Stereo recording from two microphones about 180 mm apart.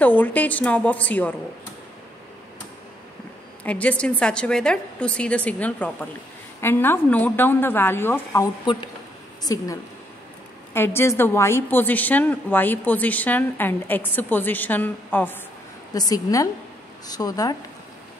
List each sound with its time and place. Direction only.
0.0 s a woman's voice: 10° left (ahead or behind)
3.6 s a woman's voice: 5° left (ahead or behind)
8.7 s a woman's voice: 25° left (ahead or behind)